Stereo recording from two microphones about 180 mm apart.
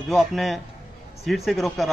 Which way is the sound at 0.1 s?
Centre (ahead or behind).